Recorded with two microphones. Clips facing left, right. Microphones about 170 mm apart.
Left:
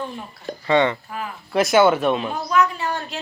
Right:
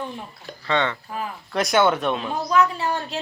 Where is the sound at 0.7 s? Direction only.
10° left (ahead or behind).